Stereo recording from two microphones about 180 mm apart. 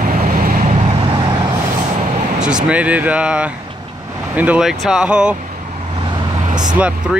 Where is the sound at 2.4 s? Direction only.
5° right (ahead or behind).